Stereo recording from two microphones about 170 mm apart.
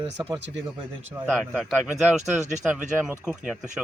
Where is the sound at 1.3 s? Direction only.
Centre (ahead or behind).